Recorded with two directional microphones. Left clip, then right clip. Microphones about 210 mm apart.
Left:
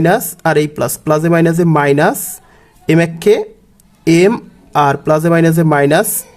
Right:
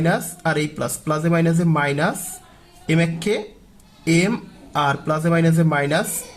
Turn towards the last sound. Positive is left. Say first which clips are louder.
# left 9 dB
turn(degrees=40)  # may be behind; listen again after turning